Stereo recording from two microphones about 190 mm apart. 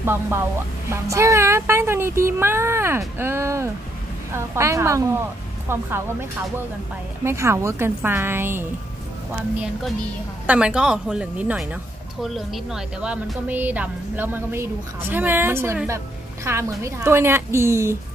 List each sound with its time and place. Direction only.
0.0 s speech: 15° right (ahead or behind)
7.2 s speech: 15° right (ahead or behind)
10.4 s speech: 5° right (ahead or behind)